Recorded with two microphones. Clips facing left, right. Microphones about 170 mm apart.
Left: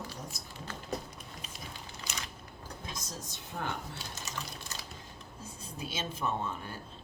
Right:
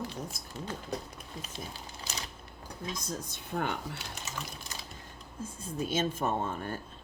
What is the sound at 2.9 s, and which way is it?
Speech, 55° right (ahead or behind).